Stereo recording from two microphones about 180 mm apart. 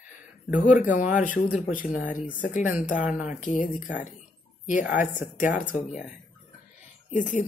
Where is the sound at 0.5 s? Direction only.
50° left (ahead or behind).